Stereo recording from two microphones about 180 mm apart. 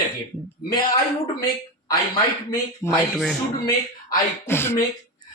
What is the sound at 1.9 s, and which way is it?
A man's voice, 20° left (ahead or behind).